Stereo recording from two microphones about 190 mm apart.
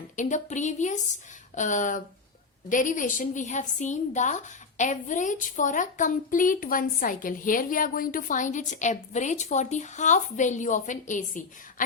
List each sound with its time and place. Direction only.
0.2 s a woman's voice: 40° left (ahead or behind)